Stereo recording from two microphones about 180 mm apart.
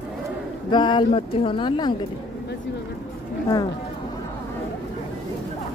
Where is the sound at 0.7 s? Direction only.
25° left (ahead or behind).